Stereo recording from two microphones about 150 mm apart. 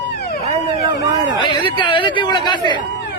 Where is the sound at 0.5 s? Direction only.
45° right (ahead or behind).